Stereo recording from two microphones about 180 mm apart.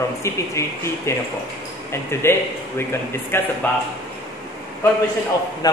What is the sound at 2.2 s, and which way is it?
Speech, 15° left (ahead or behind).